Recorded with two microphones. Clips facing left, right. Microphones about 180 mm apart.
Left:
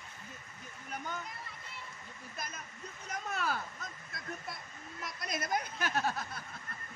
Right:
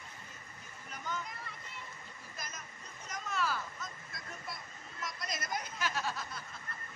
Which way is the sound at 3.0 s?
55° left (ahead or behind).